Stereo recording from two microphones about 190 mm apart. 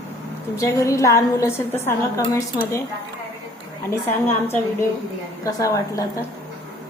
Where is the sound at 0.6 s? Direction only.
15° left (ahead or behind).